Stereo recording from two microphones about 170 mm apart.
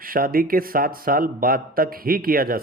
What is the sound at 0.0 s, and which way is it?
Speech, 55° right (ahead or behind).